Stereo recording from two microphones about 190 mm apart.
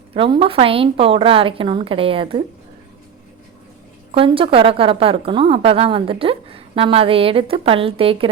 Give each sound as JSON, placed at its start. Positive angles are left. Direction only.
{"t": 0.1, "sound": "a woman's voice", "side_deg": -30}
{"t": 4.1, "sound": "a woman's voice", "side_deg": -30}